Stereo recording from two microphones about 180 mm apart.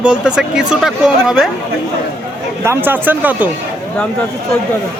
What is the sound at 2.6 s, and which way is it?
Speech, 10° right (ahead or behind).